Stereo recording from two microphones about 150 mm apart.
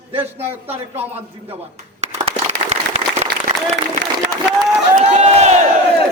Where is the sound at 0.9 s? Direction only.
45° right (ahead or behind).